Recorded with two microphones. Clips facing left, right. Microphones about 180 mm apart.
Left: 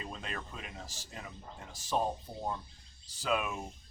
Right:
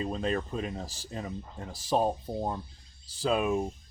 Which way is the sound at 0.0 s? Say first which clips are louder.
Right 12 dB; 35° right (ahead or behind).